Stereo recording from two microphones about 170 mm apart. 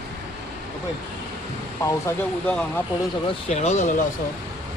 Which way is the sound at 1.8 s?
15° left (ahead or behind).